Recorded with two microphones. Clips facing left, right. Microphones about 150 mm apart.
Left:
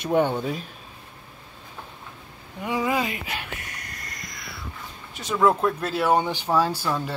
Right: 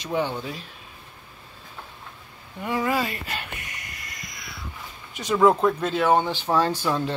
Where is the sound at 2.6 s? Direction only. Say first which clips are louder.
Even; 10° left (ahead or behind).